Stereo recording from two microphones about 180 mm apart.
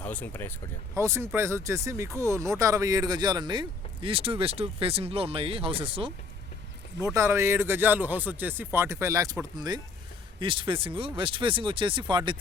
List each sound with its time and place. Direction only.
0.0 s speech: 10° left (ahead or behind)
0.9 s speech: 15° right (ahead or behind); by 6.1 s 30° right (ahead or behind)
7.0 s speech: 15° right (ahead or behind)